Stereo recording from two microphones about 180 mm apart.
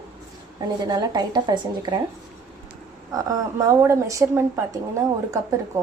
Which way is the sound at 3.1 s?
20° right (ahead or behind).